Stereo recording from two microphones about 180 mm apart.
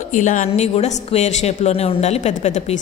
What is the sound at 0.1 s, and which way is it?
A woman's voice, 45° left (ahead or behind).